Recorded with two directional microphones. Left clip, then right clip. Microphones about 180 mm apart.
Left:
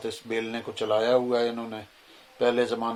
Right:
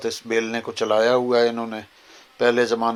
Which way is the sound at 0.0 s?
30° right (ahead or behind).